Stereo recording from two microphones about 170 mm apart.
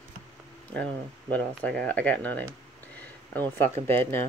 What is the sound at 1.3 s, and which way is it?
Speech, 5° left (ahead or behind).